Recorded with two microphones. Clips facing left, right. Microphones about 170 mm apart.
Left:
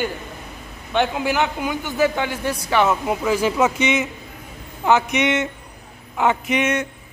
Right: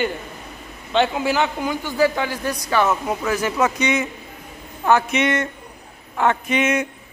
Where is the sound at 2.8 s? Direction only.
10° left (ahead or behind).